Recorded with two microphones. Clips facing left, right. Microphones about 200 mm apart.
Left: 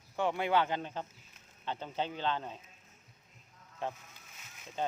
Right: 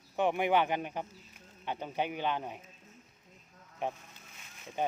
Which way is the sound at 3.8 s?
15° right (ahead or behind).